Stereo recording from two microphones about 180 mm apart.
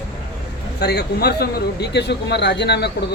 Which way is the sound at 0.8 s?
65° left (ahead or behind).